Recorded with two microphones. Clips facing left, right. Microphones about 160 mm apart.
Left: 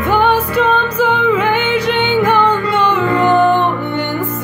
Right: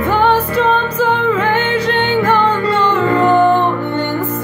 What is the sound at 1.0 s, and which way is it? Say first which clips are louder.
Music: left 1 dB; 15° left (ahead or behind).